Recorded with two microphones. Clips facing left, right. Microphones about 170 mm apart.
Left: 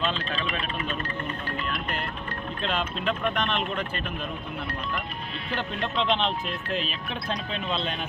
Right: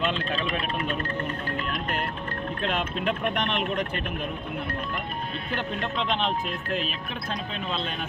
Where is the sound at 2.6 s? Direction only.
55° right (ahead or behind).